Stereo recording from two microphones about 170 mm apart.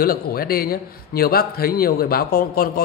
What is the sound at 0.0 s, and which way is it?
A man's voice, 60° left (ahead or behind).